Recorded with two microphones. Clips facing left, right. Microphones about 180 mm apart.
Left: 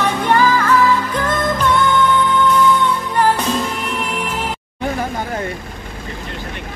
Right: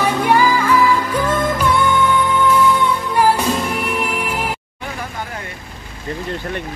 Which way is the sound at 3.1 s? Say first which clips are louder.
Right 2 dB; 10° right (ahead or behind).